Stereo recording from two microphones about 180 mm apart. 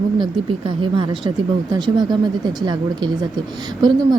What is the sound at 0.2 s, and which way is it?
Speech, 25° right (ahead or behind).